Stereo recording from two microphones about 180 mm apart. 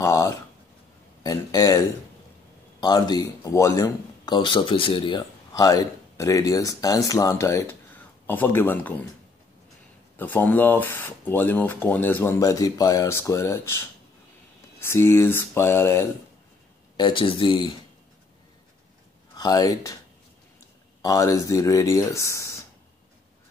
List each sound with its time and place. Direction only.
0.0 s a sound: 15° left (ahead or behind)
1.2 s speech: 20° left (ahead or behind)
2.8 s speech: 20° left (ahead or behind)
10.1 s speech: 10° left (ahead or behind)
16.9 s speech: 25° left (ahead or behind)
19.3 s speech: 20° left (ahead or behind)
21.0 s speech: 20° left (ahead or behind)